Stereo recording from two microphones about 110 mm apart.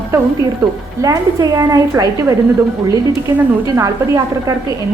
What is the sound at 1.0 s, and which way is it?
A woman's voice, 30° right (ahead or behind).